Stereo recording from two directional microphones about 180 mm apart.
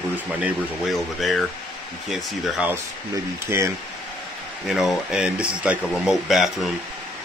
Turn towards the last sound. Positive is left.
turn(degrees=0)  # may be behind; listen again after turning